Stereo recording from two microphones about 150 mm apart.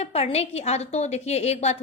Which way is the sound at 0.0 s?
45° left (ahead or behind).